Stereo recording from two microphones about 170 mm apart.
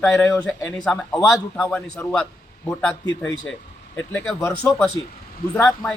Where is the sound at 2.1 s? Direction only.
5° left (ahead or behind).